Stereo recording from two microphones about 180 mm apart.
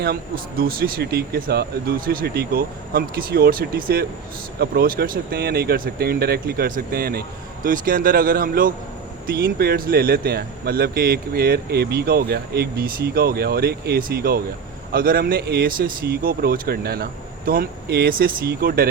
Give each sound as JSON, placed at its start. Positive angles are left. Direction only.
{"t": 0.0, "sound": "speech", "side_deg": -60}